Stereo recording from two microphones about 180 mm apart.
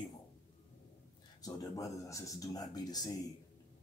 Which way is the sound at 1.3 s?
20° left (ahead or behind).